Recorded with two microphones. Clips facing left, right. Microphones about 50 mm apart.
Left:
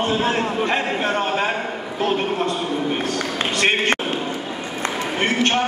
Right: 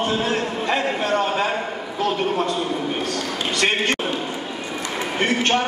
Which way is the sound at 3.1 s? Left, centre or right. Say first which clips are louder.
Left 2 dB; left.